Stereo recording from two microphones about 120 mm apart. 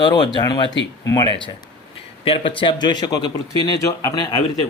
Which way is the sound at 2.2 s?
50° left (ahead or behind).